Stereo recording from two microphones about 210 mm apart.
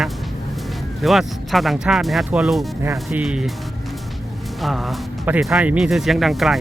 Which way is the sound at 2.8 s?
10° right (ahead or behind).